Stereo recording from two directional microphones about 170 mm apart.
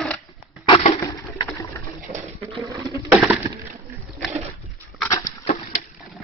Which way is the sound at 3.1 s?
10° right (ahead or behind).